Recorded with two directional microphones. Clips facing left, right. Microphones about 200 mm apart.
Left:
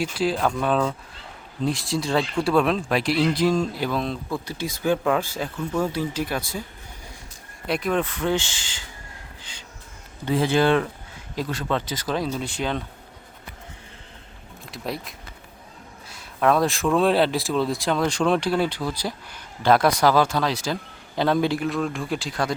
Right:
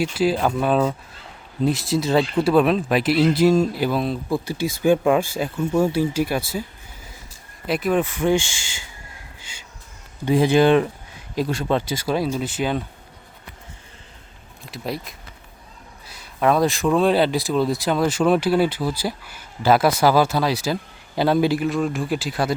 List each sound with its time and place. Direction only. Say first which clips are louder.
0.0 s speech: right 3 dB; 5° right (ahead or behind)
2.1 s speech: right 4 dB; 20° right (ahead or behind)
2.5 s speech: right 3 dB; 5° right (ahead or behind)
7.7 s speech: right 3 dB; 5° right (ahead or behind)
9.4 s a sound: even; 10° right (ahead or behind)
10.2 s speech: right 4 dB; 15° right (ahead or behind)
14.6 s speech: right 2 dB; centre (ahead or behind)